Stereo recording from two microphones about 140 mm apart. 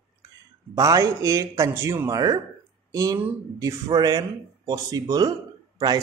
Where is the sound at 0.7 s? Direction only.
25° right (ahead or behind).